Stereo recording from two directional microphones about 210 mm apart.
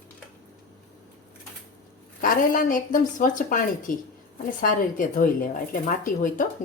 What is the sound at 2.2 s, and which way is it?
Speech, 40° left (ahead or behind).